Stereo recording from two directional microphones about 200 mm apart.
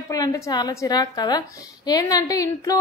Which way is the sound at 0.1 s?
15° left (ahead or behind).